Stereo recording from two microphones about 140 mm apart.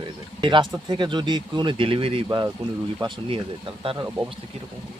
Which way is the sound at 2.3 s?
25° right (ahead or behind).